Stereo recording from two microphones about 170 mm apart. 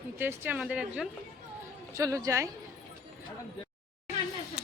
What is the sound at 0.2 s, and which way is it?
Speech, 10° right (ahead or behind).